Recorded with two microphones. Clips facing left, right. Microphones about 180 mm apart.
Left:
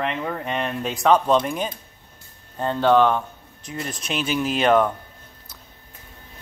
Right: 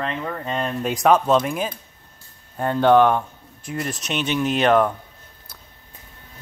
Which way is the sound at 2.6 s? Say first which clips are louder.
Right 2 dB; 15° right (ahead or behind).